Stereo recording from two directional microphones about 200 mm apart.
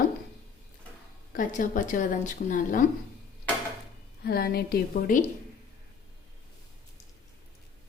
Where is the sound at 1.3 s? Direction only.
40° left (ahead or behind).